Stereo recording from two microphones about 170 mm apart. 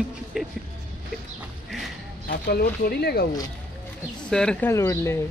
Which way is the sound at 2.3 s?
65° left (ahead or behind).